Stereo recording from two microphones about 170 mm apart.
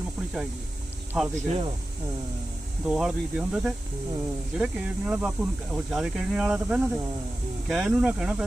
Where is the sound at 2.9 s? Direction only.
5° right (ahead or behind).